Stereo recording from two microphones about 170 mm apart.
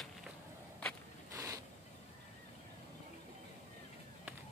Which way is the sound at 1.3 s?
20° right (ahead or behind).